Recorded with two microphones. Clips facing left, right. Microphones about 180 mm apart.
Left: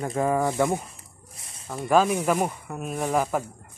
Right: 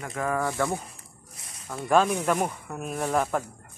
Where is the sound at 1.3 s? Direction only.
30° left (ahead or behind).